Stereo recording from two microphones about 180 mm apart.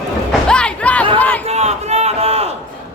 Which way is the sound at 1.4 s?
35° right (ahead or behind).